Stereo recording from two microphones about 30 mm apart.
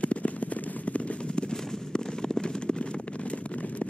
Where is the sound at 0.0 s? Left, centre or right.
Left.